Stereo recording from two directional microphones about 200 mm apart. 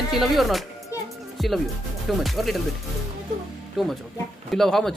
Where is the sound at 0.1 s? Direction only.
Centre (ahead or behind).